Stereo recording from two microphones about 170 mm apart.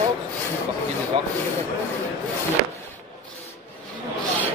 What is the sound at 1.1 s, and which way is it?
Rub, 35° right (ahead or behind).